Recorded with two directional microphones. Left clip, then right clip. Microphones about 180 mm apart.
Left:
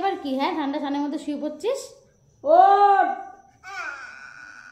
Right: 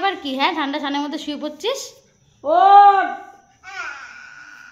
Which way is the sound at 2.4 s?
45° right (ahead or behind).